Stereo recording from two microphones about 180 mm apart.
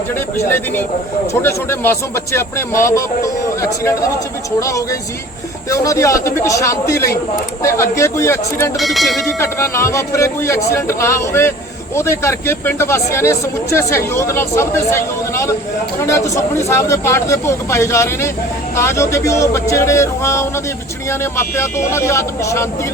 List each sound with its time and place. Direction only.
0.4 s speech: 10° left (ahead or behind)
8.8 s speech: centre (ahead or behind)
9.4 s speech: 15° left (ahead or behind)